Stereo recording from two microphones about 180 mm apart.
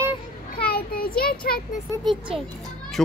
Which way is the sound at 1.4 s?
55° left (ahead or behind).